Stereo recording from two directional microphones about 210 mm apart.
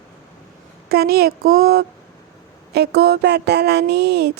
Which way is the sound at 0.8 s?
50° right (ahead or behind).